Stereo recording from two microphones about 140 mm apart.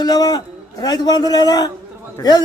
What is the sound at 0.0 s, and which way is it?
A man's voice, 30° left (ahead or behind).